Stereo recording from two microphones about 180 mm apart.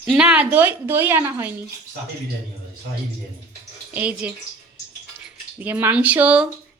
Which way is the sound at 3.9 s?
10° right (ahead or behind).